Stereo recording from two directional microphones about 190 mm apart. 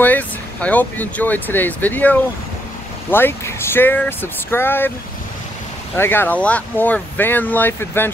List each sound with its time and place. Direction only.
0.0 s speech: 10° left (ahead or behind)
5.9 s speech: 10° left (ahead or behind)